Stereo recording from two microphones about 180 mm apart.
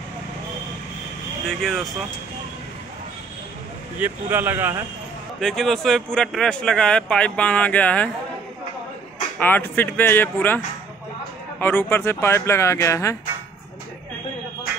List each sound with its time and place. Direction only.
1.5 s speech: centre (ahead or behind)
4.0 s speech: 10° right (ahead or behind)
5.4 s speech: centre (ahead or behind)
9.4 s speech: 10° left (ahead or behind)
11.6 s speech: 15° left (ahead or behind)